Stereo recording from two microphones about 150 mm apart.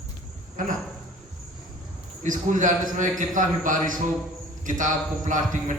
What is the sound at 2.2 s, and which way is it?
A man's voice, 55° right (ahead or behind).